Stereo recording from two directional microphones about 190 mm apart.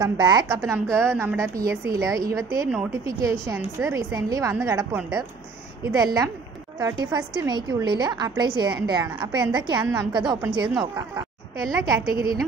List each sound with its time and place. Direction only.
0.0 s a woman's voice: 20° right (ahead or behind)
2.7 s a woman's voice: 5° right (ahead or behind)
3.2 s a woman's voice: 15° right (ahead or behind)
12.1 s a woman's voice: 50° right (ahead or behind)